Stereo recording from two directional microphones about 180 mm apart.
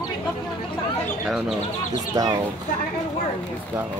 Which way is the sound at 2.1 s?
20° right (ahead or behind).